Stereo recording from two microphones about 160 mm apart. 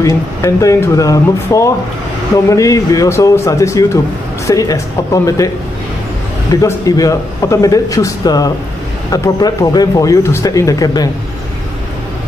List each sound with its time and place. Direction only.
0.0 s speech: 20° left (ahead or behind)
6.5 s speech: 20° left (ahead or behind)